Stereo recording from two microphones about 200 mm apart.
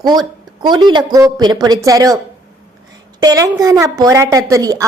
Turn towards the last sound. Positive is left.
turn(degrees=-15)  # may be behind; listen again after turning